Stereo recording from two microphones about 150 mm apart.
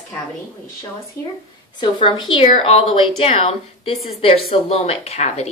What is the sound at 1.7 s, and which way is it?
Speech, 30° left (ahead or behind).